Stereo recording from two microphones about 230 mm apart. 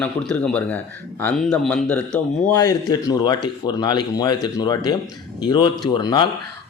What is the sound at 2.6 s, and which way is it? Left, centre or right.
Speech, centre.